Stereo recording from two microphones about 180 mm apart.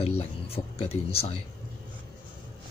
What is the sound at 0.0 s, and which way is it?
Speech, 35° left (ahead or behind).